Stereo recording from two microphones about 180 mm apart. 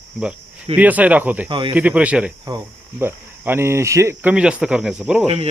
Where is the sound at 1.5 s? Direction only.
25° right (ahead or behind).